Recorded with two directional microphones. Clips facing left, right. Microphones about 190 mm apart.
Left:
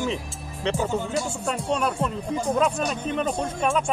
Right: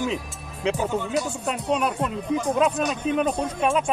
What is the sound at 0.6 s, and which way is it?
Speech, 5° right (ahead or behind).